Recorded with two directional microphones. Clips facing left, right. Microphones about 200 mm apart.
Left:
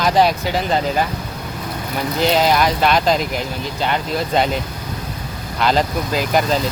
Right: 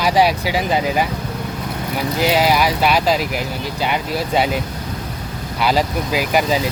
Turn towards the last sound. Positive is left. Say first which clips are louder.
# even
turn(degrees=-10)  # may be behind; listen again after turning